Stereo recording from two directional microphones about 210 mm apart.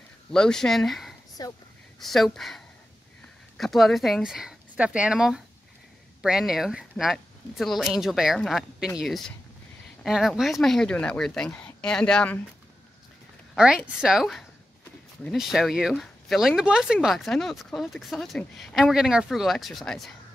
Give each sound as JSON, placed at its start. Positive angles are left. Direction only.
{"t": 0.3, "sound": "speech", "side_deg": 5}
{"t": 1.4, "sound": "speech", "side_deg": 20}
{"t": 2.0, "sound": "speech", "side_deg": 0}
{"t": 13.6, "sound": "speech", "side_deg": -5}